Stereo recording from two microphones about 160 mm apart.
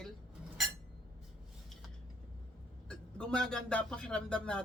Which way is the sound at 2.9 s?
5° left (ahead or behind).